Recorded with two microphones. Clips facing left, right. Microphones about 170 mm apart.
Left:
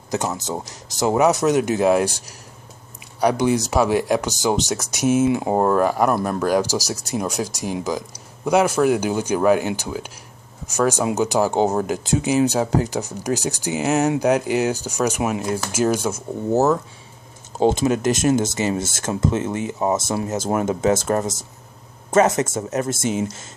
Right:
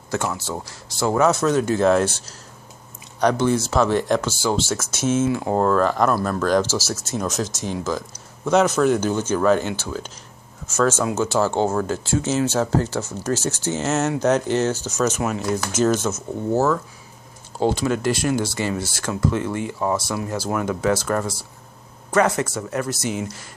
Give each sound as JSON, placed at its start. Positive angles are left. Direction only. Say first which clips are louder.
{"t": 0.1, "sound": "speech", "louder": "left 1 dB", "side_deg": 20}